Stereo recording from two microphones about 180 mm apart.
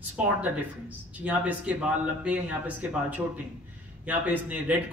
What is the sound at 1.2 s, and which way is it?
Speech, 10° right (ahead or behind).